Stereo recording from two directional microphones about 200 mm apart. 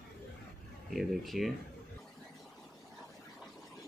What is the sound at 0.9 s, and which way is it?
Speech, centre (ahead or behind).